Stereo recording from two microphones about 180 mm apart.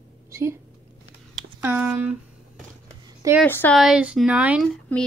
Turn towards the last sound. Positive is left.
turn(degrees=5)  # may be behind; listen again after turning